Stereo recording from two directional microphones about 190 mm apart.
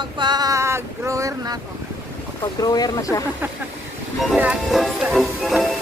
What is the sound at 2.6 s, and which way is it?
Speech, 20° left (ahead or behind).